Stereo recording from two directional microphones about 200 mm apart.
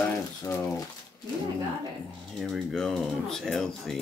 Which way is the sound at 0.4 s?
15° left (ahead or behind).